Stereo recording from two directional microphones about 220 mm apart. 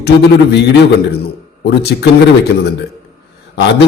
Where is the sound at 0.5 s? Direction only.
50° left (ahead or behind).